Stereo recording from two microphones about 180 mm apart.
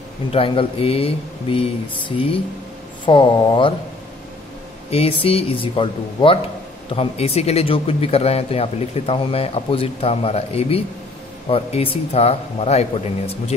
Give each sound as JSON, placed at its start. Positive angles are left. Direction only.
{"t": 0.3, "sound": "speech", "side_deg": 30}
{"t": 4.9, "sound": "speech", "side_deg": 30}